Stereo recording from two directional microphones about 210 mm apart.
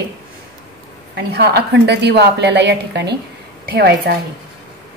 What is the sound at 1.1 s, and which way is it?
A woman's voice, 50° right (ahead or behind).